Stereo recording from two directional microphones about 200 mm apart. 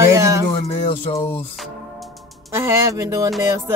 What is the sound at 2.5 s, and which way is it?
Speech, 15° right (ahead or behind).